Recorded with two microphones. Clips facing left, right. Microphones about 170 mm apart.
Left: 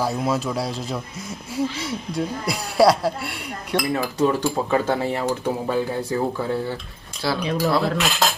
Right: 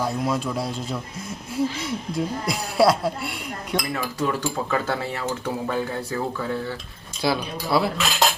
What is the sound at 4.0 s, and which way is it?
Speech, 30° left (ahead or behind).